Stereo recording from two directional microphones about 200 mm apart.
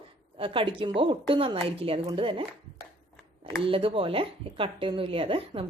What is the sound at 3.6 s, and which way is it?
Speech, 25° right (ahead or behind).